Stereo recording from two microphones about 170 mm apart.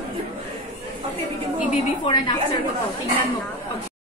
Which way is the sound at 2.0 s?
25° left (ahead or behind).